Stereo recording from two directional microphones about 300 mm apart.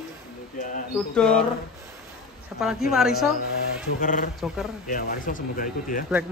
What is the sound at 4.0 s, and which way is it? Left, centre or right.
Speech, left.